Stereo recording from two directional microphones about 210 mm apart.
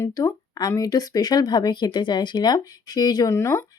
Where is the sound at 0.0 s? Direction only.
15° left (ahead or behind).